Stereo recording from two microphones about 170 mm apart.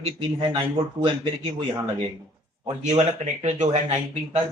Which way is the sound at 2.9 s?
40° right (ahead or behind).